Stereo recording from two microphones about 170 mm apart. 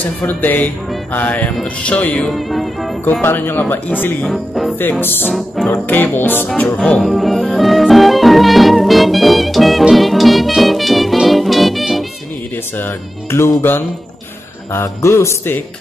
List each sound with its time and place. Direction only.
0.2 s speech: 10° left (ahead or behind)
3.2 s speech: 15° left (ahead or behind)
4.3 s speech: centre (ahead or behind)
5.0 s speech: 10° left (ahead or behind)
6.8 s music: centre (ahead or behind)
12.7 s speech: 15° left (ahead or behind)